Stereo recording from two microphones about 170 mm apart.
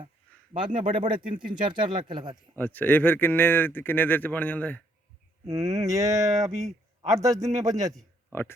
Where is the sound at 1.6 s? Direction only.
25° right (ahead or behind).